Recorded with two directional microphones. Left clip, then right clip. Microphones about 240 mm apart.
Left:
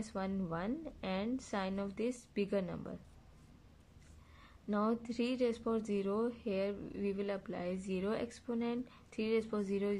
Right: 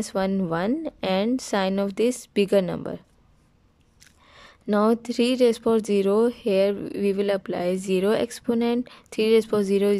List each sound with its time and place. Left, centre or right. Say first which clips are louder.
0.0 s a woman's voice: right 16 dB; right
4.3 s speech: right 15 dB; right